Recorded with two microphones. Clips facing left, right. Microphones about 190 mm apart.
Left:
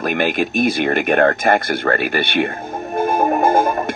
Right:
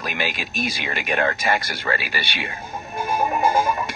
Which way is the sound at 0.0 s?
55° left (ahead or behind).